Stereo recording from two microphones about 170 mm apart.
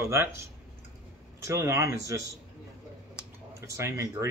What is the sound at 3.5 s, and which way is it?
Speech, 20° right (ahead or behind).